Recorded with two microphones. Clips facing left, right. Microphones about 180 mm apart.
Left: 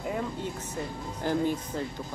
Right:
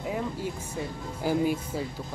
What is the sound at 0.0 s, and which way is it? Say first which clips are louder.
Music: right 1 dB; centre (ahead or behind).